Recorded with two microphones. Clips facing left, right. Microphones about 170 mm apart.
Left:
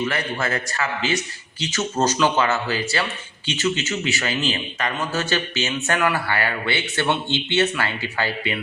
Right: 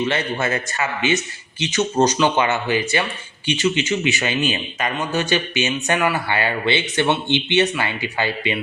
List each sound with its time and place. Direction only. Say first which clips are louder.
0.0 s a man's voice: right 3 dB; 25° right (ahead or behind)